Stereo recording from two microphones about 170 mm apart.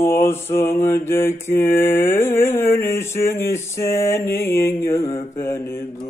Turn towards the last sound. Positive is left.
turn(degrees=15)  # may be behind; listen again after turning